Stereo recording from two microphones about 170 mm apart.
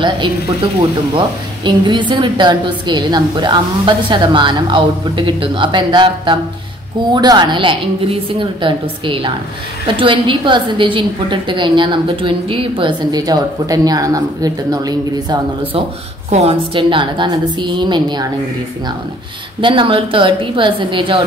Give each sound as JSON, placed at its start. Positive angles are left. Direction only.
{"t": 1.1, "sound": "a woman's voice", "side_deg": -25}
{"t": 16.3, "sound": "a woman's voice", "side_deg": -35}
{"t": 19.6, "sound": "a woman's voice", "side_deg": -30}